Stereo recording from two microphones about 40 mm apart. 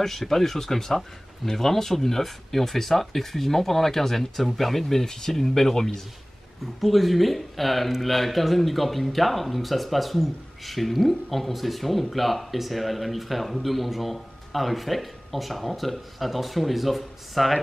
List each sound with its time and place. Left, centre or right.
0.0 s speech: centre